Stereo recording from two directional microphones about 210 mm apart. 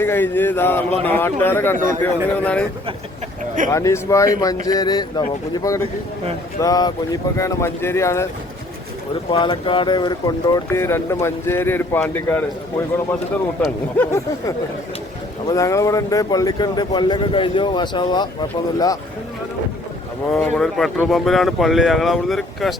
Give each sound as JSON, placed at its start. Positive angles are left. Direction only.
{"t": 0.0, "sound": "speech", "side_deg": 10}
{"t": 1.7, "sound": "a man's voice", "side_deg": -40}
{"t": 2.0, "sound": "speech", "side_deg": 5}
{"t": 3.7, "sound": "speech", "side_deg": 15}
{"t": 9.3, "sound": "speech", "side_deg": 25}
{"t": 14.0, "sound": "speech", "side_deg": 15}
{"t": 20.3, "sound": "speech", "side_deg": 5}